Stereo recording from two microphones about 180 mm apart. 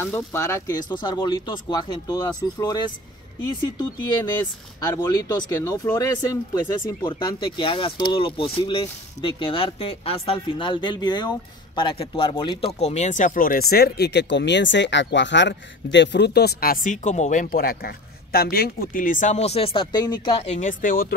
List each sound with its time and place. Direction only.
0.0 s speech: 15° left (ahead or behind); by 21.1 s 50° left (ahead or behind)